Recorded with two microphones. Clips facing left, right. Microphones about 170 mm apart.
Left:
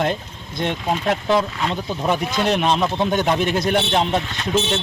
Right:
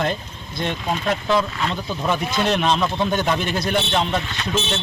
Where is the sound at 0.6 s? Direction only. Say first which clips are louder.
Left 2 dB; 20° left (ahead or behind).